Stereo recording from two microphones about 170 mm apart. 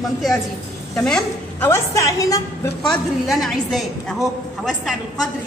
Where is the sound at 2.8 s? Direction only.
Centre (ahead or behind).